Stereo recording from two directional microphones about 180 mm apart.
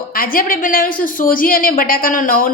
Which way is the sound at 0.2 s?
50° left (ahead or behind).